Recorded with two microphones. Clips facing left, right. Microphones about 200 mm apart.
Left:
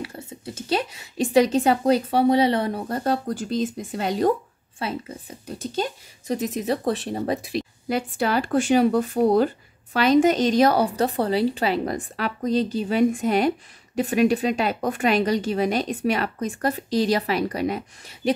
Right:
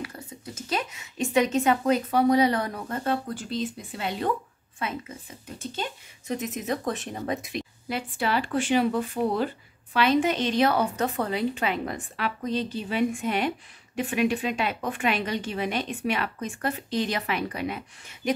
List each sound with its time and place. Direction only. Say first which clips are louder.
0.0 s a woman's voice: left 3 dB; 30° left (ahead or behind)